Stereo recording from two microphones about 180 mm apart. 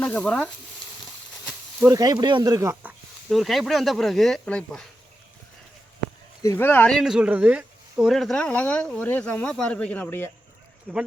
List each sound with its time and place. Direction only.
0.0 s frying: 10° left (ahead or behind)
1.9 s speech: 20° right (ahead or behind)
3.2 s speech: centre (ahead or behind)
6.4 s speech: 15° left (ahead or behind)